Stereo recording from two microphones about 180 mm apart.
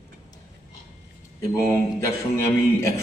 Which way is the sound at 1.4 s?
15° left (ahead or behind).